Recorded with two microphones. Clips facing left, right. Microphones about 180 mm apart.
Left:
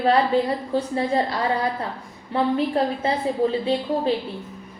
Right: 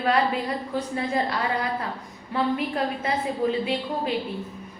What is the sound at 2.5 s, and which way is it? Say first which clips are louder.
Speech: left 5 dB; 30° left (ahead or behind).